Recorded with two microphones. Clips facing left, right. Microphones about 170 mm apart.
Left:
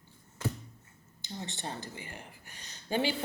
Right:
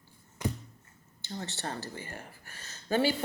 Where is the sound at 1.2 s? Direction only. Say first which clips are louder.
Right 2 dB; 15° left (ahead or behind).